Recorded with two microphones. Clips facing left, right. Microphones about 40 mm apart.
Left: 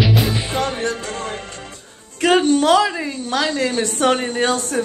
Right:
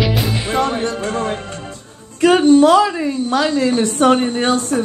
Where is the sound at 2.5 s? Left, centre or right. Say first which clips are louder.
Right 4 dB; left.